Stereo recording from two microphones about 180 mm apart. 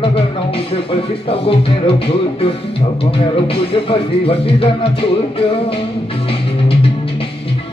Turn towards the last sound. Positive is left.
turn(degrees=30)  # may be behind; listen again after turning